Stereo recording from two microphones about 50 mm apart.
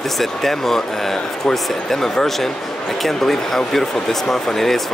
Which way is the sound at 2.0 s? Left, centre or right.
Centre.